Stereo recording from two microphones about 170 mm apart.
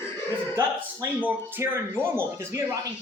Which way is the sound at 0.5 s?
15° right (ahead or behind).